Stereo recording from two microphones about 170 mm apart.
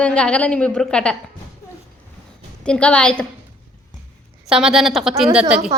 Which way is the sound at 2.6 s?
5° left (ahead or behind).